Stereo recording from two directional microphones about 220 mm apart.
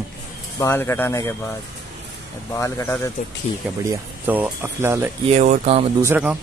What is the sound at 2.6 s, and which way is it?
Speech, 10° left (ahead or behind).